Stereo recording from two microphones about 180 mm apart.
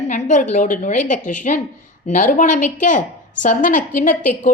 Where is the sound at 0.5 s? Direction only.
45° left (ahead or behind).